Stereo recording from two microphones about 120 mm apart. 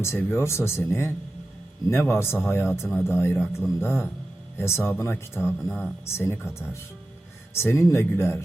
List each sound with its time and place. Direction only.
0.0 s speech: 20° left (ahead or behind)